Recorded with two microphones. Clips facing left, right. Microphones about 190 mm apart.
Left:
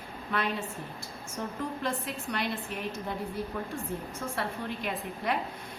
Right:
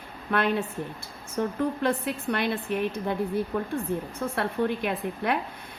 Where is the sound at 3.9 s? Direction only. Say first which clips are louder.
Right 6 dB; 65° right (ahead or behind).